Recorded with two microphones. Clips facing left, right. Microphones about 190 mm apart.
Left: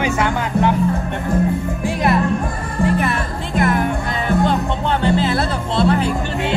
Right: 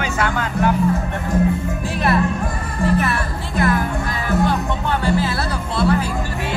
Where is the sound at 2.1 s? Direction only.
20° left (ahead or behind).